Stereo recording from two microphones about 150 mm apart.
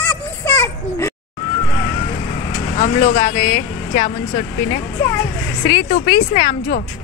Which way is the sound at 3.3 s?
20° left (ahead or behind).